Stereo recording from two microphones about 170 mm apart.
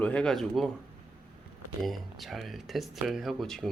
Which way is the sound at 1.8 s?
Centre (ahead or behind).